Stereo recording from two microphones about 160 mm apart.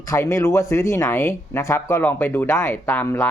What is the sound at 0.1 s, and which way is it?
Speech, 15° left (ahead or behind).